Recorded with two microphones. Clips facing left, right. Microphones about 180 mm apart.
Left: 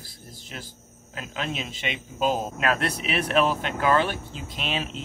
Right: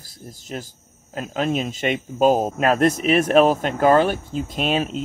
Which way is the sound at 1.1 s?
45° right (ahead or behind).